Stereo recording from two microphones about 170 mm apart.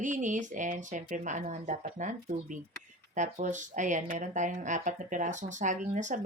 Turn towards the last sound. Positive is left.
turn(degrees=-45)  # may be behind; listen again after turning